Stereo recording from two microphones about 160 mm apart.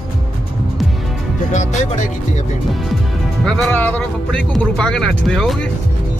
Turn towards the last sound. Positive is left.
turn(degrees=5)  # may be behind; listen again after turning